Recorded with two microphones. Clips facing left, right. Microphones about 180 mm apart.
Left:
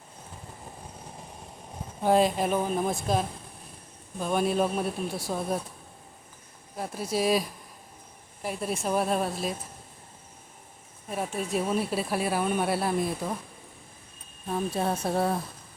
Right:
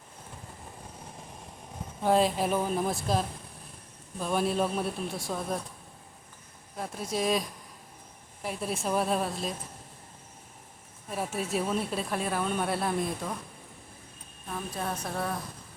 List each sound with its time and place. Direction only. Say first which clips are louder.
2.0 s a woman's voice: left 2 dB; centre (ahead or behind)
6.7 s a woman's voice: left 3 dB; 5° left (ahead or behind)
11.1 s a woman's voice: left 2 dB; 5° right (ahead or behind)
14.4 s a woman's voice: left 7 dB; 30° left (ahead or behind)